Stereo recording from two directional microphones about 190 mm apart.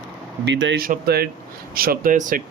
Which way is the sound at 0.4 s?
70° right (ahead or behind).